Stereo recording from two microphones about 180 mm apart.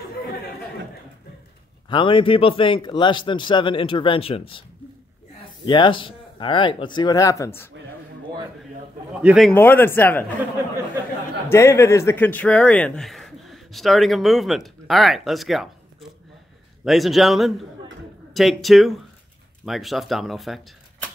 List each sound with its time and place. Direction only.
1.9 s a man's voice: 30° left (ahead or behind)
5.7 s a man's voice: 25° left (ahead or behind)
9.2 s speech: 5° right (ahead or behind)
9.5 s speech: 10° left (ahead or behind)
11.4 s speech: 15° left (ahead or behind); by 20.6 s centre (ahead or behind)